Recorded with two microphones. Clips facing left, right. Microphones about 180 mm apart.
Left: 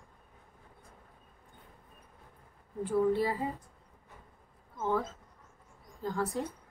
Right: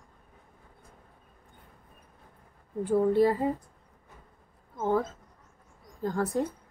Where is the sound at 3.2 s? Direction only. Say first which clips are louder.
Right 8 dB; 50° right (ahead or behind).